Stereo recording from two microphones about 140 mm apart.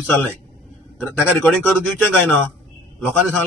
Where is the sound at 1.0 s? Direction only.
5° right (ahead or behind).